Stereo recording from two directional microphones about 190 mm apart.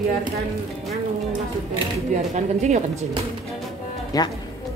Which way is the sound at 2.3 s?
35° right (ahead or behind).